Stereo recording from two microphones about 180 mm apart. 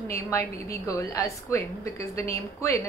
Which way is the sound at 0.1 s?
15° left (ahead or behind).